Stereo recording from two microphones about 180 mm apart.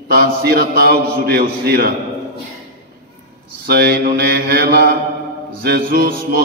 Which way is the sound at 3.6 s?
60° right (ahead or behind).